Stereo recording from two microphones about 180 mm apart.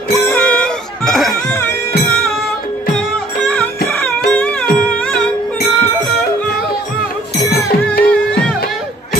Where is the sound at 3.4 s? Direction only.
5° left (ahead or behind).